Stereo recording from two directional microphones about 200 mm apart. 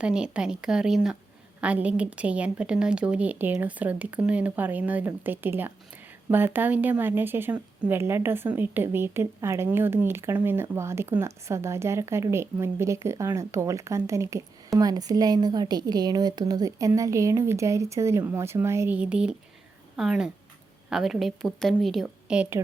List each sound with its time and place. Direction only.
0.0 s a woman's voice: 5° right (ahead or behind)